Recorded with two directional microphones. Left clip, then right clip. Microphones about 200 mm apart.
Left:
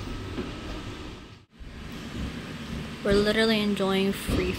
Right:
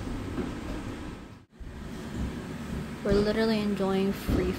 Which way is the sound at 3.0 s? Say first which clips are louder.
Left 3 dB; centre (ahead or behind).